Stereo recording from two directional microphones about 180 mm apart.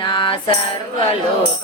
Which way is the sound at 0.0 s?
30° left (ahead or behind).